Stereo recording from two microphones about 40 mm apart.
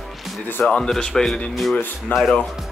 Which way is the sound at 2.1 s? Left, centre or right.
Left.